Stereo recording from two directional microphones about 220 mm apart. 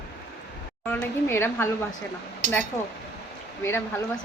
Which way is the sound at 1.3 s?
10° left (ahead or behind).